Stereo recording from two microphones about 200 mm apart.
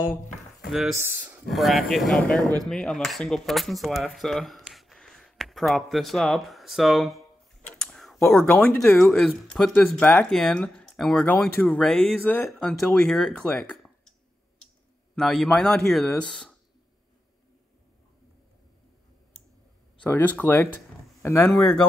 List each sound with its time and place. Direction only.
0.6 s speech: centre (ahead or behind)
0.9 s speech: 10° right (ahead or behind)
1.5 s speech: centre (ahead or behind)
2.4 s speech: 20° right (ahead or behind)
2.7 s speech: 5° left (ahead or behind)
7.8 s tick-tock: centre (ahead or behind)
8.2 s speech: 10° left (ahead or behind)
15.1 s speech: 5° left (ahead or behind)
20.0 s speech: 10° left (ahead or behind)